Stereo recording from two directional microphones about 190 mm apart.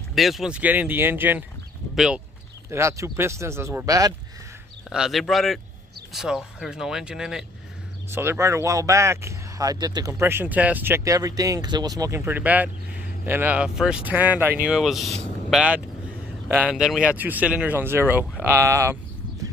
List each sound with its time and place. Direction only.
0.1 s speech: centre (ahead or behind)
2.7 s speech: 15° right (ahead or behind)
4.8 s speech: centre (ahead or behind)